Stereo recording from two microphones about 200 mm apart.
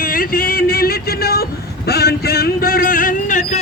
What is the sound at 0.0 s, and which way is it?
Speech, 45° left (ahead or behind).